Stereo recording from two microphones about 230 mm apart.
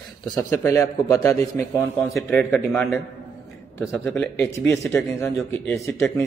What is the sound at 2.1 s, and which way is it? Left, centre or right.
A man's voice, centre.